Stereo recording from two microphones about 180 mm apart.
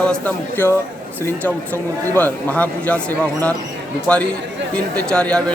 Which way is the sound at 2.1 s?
10° left (ahead or behind).